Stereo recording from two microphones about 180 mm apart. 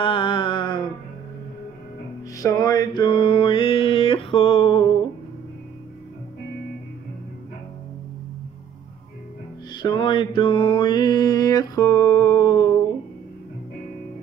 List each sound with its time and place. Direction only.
0.0 s music: 30° left (ahead or behind)
2.3 s mantra: 20° left (ahead or behind)
9.8 s mantra: 25° left (ahead or behind)